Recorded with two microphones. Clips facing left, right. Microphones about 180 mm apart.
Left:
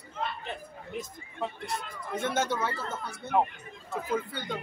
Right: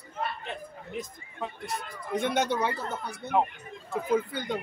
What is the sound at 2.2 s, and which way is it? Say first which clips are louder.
Speech: right 2 dB; 15° right (ahead or behind).